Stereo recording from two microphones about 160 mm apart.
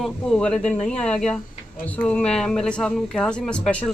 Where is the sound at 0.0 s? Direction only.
5° left (ahead or behind).